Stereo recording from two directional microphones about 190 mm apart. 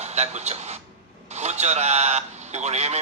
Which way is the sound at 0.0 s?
35° right (ahead or behind).